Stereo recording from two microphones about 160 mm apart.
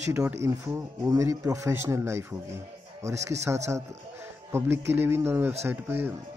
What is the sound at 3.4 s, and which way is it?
A man's voice, 20° right (ahead or behind).